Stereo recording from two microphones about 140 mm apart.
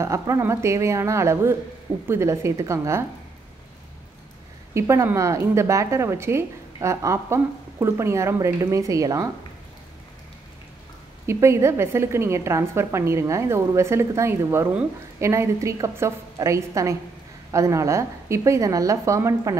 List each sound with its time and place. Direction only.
0.0 s a woman's voice: 20° right (ahead or behind)
4.7 s a woman's voice: 20° right (ahead or behind)
11.2 s a woman's voice: 20° right (ahead or behind)